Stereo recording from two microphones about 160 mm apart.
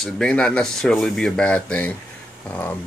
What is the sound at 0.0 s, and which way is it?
Speech, 5° left (ahead or behind).